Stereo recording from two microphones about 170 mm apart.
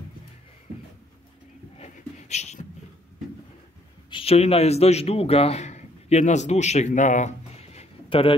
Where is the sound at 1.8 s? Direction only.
40° left (ahead or behind).